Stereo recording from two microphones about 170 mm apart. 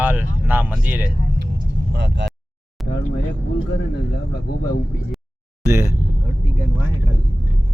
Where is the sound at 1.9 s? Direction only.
90° right.